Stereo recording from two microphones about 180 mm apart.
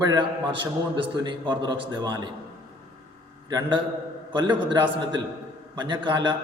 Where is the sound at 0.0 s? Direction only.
20° right (ahead or behind).